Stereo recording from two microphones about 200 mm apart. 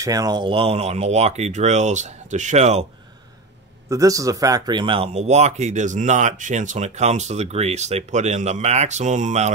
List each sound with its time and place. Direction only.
0.0 s speech: 15° right (ahead or behind); by 2.9 s 35° right (ahead or behind)
3.9 s speech: 15° right (ahead or behind); by 9.5 s 35° right (ahead or behind)